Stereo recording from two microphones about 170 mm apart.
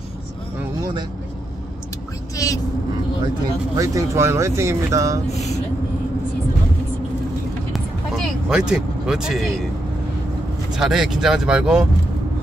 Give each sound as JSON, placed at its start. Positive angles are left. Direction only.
{"t": 2.3, "sound": "vehicle", "side_deg": 20}
{"t": 3.7, "sound": "speech", "side_deg": -20}
{"t": 7.7, "sound": "vehicle", "side_deg": -5}
{"t": 10.7, "sound": "speech", "side_deg": -5}